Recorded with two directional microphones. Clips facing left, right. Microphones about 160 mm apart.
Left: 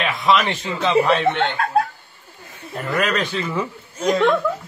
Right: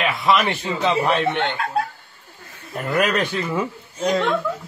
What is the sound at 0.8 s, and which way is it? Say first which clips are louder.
Speech: left 3 dB; 15° right (ahead or behind).